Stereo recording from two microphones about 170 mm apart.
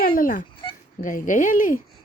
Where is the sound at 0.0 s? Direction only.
55° left (ahead or behind).